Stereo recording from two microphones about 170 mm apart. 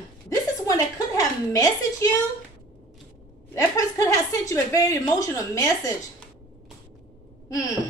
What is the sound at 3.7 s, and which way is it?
A woman's voice, 20° left (ahead or behind).